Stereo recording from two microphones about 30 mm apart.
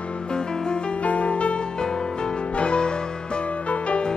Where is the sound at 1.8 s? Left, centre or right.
Left.